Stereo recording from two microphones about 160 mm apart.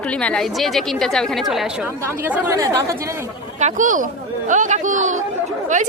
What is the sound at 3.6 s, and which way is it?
A woman's voice, 55° right (ahead or behind).